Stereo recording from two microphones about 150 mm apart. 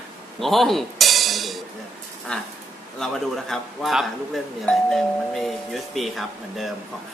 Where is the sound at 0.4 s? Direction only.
Centre (ahead or behind).